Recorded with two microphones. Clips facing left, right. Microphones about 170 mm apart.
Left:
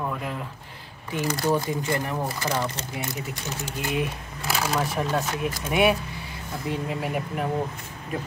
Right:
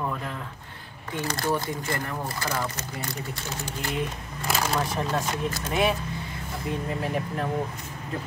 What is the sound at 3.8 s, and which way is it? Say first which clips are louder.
Speech: left 3 dB; 20° left (ahead or behind).